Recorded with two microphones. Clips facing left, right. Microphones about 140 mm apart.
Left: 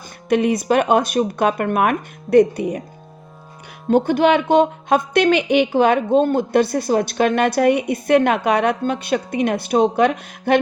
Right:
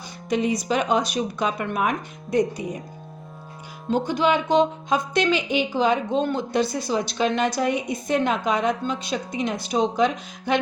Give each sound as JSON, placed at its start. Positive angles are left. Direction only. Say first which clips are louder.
{"t": 0.3, "sound": "speech", "louder": "left 6 dB", "side_deg": 60}
{"t": 3.8, "sound": "speech", "louder": "left 6 dB", "side_deg": 60}